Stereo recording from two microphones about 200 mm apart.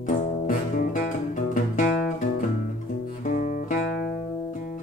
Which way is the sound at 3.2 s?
40° left (ahead or behind).